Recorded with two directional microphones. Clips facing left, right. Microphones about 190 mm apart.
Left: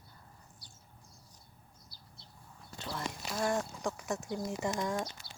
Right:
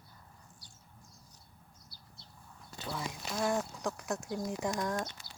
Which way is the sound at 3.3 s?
Centre (ahead or behind).